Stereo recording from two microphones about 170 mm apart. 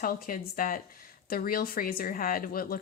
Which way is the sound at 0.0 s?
55° left (ahead or behind).